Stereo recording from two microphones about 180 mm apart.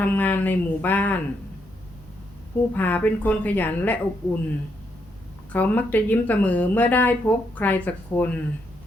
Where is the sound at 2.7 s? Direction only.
10° left (ahead or behind).